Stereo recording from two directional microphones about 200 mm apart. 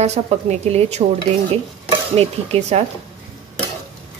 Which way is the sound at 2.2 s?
30° right (ahead or behind).